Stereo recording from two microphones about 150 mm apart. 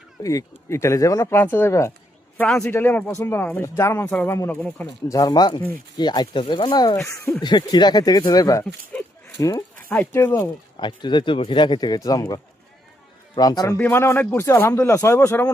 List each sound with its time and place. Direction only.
0.2 s speech: 20° left (ahead or behind)
5.0 s speech: 25° left (ahead or behind)
6.9 s speech: 15° left (ahead or behind)
7.4 s speech: 30° left (ahead or behind)
9.9 s speech: 15° left (ahead or behind)
10.8 s speech: 30° left (ahead or behind)
13.7 s speech: 15° left (ahead or behind)